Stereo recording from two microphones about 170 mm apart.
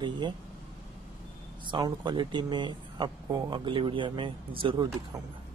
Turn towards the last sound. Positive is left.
turn(degrees=-30)  # may be behind; listen again after turning